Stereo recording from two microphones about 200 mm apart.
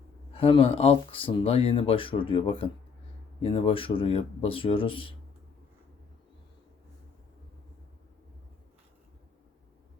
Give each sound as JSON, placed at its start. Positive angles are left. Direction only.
{"t": 0.3, "sound": "speech", "side_deg": 30}